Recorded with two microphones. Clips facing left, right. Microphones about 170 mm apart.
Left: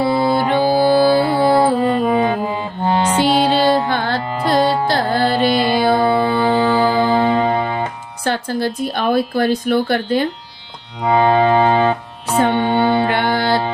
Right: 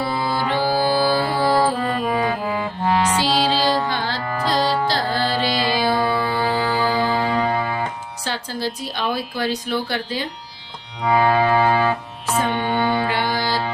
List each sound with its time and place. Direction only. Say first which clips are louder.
0.0 s music: left 7 dB; 25° left (ahead or behind)
0.3 s music: left 6 dB; 55° left (ahead or behind)
0.5 s music: left 5 dB; 20° left (ahead or behind)
3.2 s music: left 5 dB; 55° left (ahead or behind)
6.0 s music: left 6 dB; 25° left (ahead or behind)
8.2 s a woman's voice: left 7 dB; 55° left (ahead or behind)
11.0 s music: left 4 dB; 20° left (ahead or behind)
12.4 s music: left 7 dB; 60° left (ahead or behind)
12.6 s mantra: left 5 dB; 25° left (ahead or behind)
13.1 s music: left 5 dB; 60° left (ahead or behind)